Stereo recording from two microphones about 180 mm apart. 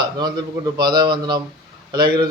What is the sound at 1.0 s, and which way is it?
A man's voice, 25° right (ahead or behind).